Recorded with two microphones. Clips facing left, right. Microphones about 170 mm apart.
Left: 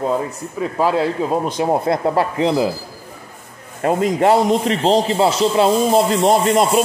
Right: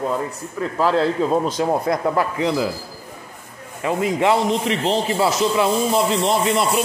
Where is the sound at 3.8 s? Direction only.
45° left (ahead or behind).